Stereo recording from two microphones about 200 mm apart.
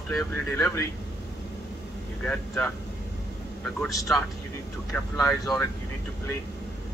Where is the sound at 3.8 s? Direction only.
Centre (ahead or behind).